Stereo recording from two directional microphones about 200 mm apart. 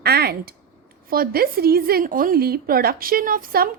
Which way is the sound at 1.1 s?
50° right (ahead or behind).